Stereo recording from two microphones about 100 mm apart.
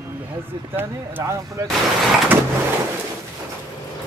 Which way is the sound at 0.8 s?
25° right (ahead or behind).